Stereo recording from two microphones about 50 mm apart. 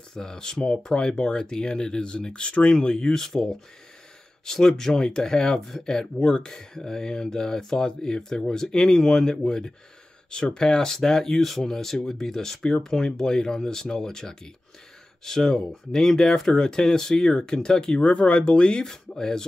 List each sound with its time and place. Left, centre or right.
0.1 s speech: centre
18.0 s speech: left; by 19.4 s centre